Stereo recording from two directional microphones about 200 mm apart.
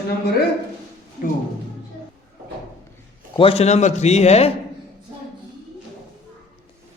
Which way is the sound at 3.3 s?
30° left (ahead or behind).